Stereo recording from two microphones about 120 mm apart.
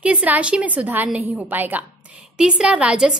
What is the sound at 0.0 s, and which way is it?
A woman's voice, 10° right (ahead or behind).